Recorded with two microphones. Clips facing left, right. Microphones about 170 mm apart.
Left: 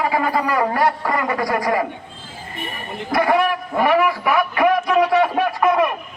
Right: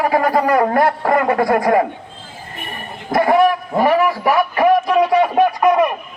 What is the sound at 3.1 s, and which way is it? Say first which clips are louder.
A man's voice: right 4 dB; 45° right (ahead or behind).